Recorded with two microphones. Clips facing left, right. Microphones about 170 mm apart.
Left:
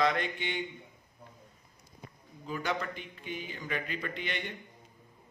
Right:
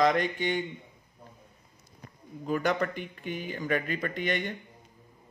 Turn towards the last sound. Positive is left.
turn(degrees=-50)  # may be behind; listen again after turning